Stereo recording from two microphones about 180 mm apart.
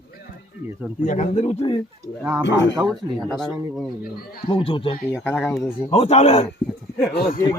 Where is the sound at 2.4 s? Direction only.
80° left.